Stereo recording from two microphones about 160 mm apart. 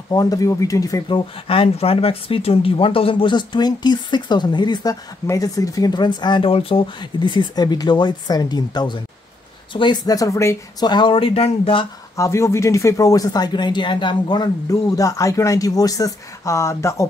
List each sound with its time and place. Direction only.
0.1 s speech: 25° left (ahead or behind)
12.2 s speech: 15° left (ahead or behind)